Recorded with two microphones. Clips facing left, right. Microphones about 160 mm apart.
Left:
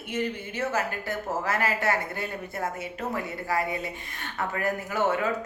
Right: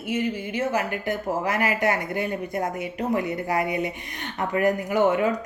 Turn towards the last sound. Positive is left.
turn(degrees=-15)  # may be behind; listen again after turning